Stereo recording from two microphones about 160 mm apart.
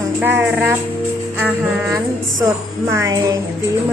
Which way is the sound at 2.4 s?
15° right (ahead or behind).